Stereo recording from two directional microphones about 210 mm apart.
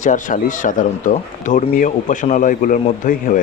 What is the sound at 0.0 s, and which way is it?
Speech, 40° left (ahead or behind).